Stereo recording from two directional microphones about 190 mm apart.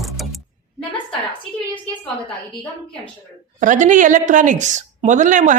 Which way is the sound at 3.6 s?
40° right (ahead or behind).